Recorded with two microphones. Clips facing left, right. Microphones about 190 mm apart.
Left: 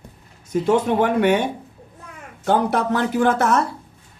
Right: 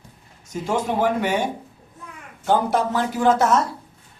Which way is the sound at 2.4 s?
60° left (ahead or behind).